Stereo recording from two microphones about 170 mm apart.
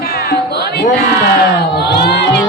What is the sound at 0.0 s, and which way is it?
Music, 70° left (ahead or behind).